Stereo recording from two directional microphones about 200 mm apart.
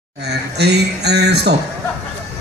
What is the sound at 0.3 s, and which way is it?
A man's voice, 55° right (ahead or behind).